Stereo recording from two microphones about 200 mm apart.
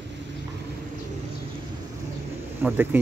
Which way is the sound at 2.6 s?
10° right (ahead or behind).